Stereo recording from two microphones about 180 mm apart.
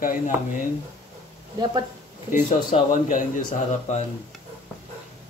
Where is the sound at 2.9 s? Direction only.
45° left (ahead or behind).